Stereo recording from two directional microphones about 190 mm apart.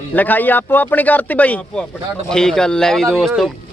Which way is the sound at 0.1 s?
10° left (ahead or behind).